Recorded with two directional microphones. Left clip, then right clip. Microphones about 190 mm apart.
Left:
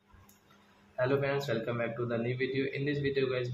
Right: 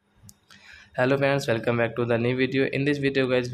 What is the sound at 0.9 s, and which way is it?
A man's voice, 45° right (ahead or behind).